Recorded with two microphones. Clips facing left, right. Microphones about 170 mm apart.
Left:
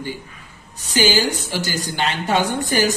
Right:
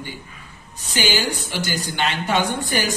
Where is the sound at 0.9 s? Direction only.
40° left (ahead or behind).